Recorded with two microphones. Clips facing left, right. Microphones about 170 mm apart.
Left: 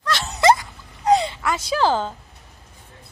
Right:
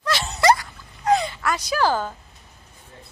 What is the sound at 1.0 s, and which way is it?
Dog, 30° left (ahead or behind).